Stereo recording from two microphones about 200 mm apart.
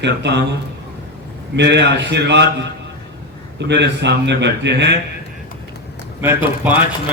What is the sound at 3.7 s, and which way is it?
A man's voice, 60° right (ahead or behind).